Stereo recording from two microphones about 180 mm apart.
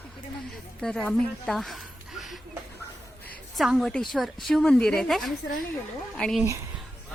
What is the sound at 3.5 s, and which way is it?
A woman's voice, centre (ahead or behind).